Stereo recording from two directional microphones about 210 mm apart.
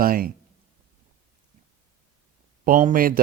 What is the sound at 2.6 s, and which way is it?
Speech, 40° right (ahead or behind).